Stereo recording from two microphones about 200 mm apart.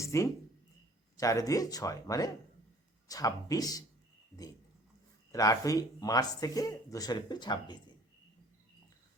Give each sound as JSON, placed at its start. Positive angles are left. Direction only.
{"t": 0.0, "sound": "a sound", "side_deg": 15}
{"t": 1.2, "sound": "speech", "side_deg": 15}
{"t": 5.3, "sound": "speech", "side_deg": 15}